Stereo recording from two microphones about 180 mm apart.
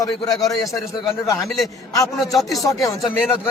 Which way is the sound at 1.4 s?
Centre (ahead or behind).